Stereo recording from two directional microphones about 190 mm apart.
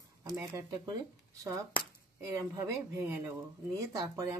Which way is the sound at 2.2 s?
20° right (ahead or behind).